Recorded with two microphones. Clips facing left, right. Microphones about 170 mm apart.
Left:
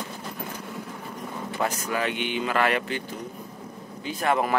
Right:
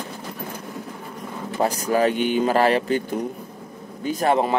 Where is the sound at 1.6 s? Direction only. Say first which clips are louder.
Right 8 dB; 35° right (ahead or behind).